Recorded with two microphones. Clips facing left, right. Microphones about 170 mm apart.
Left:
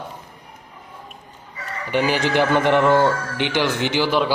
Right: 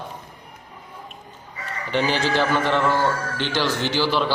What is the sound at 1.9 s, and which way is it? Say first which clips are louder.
Speech: left 2 dB; 10° left (ahead or behind).